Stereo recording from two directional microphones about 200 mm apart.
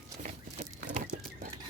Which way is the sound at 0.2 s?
35° right (ahead or behind).